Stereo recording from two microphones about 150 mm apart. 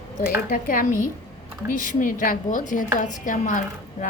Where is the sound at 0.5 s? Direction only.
65° left (ahead or behind).